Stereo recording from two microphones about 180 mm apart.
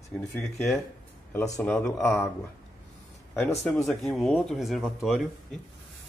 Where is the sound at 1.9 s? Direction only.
Centre (ahead or behind).